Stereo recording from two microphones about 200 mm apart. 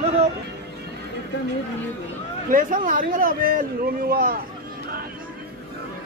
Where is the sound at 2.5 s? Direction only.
45° right (ahead or behind).